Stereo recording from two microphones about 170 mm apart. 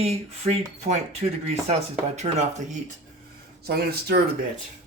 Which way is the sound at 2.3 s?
40° right (ahead or behind).